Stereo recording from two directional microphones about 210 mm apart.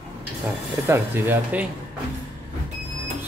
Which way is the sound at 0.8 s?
10° right (ahead or behind).